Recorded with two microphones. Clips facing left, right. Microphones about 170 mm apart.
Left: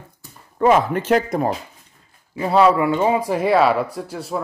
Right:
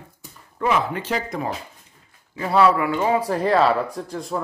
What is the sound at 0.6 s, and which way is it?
Speech, 45° left (ahead or behind).